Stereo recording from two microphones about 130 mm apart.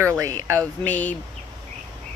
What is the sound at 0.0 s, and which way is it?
Speech, 25° right (ahead or behind).